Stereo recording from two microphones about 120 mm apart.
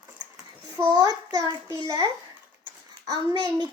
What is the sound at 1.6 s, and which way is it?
Speech, 35° left (ahead or behind).